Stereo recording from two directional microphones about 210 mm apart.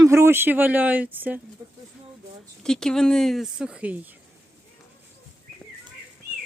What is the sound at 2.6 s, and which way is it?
Speech, 5° left (ahead or behind).